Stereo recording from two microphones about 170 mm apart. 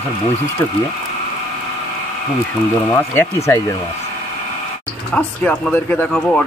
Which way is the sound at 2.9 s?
15° left (ahead or behind).